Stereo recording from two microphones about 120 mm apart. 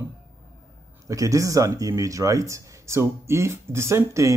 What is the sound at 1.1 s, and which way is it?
Speech, 30° right (ahead or behind).